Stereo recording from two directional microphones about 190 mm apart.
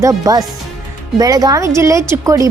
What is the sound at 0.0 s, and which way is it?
Speech, 20° right (ahead or behind).